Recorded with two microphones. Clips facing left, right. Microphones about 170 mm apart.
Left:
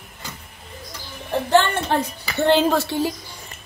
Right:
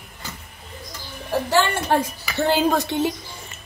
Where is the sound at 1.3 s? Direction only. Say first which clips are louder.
Left 2 dB; 10° right (ahead or behind).